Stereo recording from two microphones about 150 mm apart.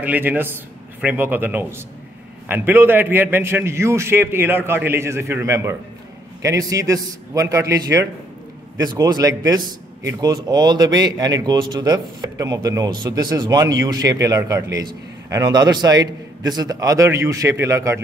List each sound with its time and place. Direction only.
0.0 s a man's voice: 10° right (ahead or behind)